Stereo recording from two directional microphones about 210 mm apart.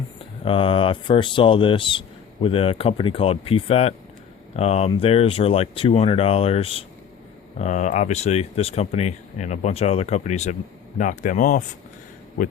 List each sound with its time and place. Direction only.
0.4 s speech: 25° left (ahead or behind)